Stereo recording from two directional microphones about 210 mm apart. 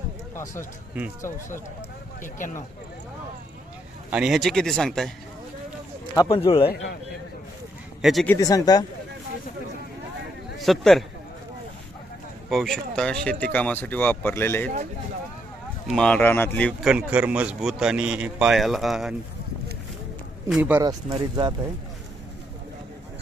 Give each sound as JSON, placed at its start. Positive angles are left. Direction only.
{"t": 2.2, "sound": "speech", "side_deg": 35}
{"t": 4.1, "sound": "speech", "side_deg": 0}
{"t": 6.1, "sound": "speech", "side_deg": 20}
{"t": 8.0, "sound": "speech", "side_deg": 0}
{"t": 8.4, "sound": "speech", "side_deg": 15}
{"t": 10.6, "sound": "a man's voice", "side_deg": 0}
{"t": 12.5, "sound": "speech", "side_deg": 0}
{"t": 15.9, "sound": "speech", "side_deg": 5}
{"t": 20.5, "sound": "speech", "side_deg": -10}
{"t": 20.8, "sound": "speech", "side_deg": -20}